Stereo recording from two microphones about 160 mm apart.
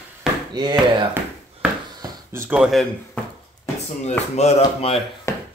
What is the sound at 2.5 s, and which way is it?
Speech, centre (ahead or behind).